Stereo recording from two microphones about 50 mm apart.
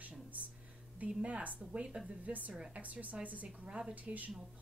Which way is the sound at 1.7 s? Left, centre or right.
Centre.